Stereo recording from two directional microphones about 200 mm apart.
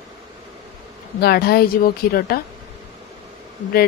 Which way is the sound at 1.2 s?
50° left (ahead or behind).